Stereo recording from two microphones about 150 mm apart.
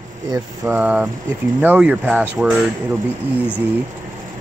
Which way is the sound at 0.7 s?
10° right (ahead or behind).